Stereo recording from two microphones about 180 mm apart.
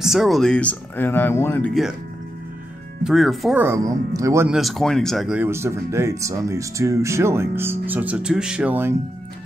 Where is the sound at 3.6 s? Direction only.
20° right (ahead or behind).